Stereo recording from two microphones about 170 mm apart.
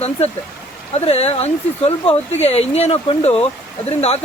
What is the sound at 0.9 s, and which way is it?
Speech, 35° left (ahead or behind).